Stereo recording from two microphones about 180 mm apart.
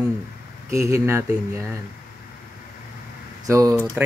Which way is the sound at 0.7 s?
15° right (ahead or behind).